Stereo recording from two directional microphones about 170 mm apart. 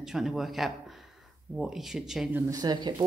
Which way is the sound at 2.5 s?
25° right (ahead or behind).